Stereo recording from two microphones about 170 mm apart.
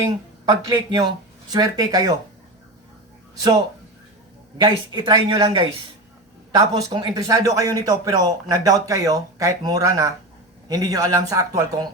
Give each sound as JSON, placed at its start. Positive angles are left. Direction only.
{"t": 0.7, "sound": "speech", "side_deg": -25}
{"t": 4.5, "sound": "speech", "side_deg": -25}